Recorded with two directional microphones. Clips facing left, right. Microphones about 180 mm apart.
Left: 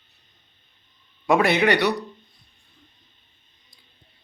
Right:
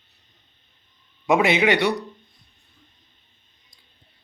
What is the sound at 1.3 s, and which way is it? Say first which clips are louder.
Speech: even; 20° right (ahead or behind).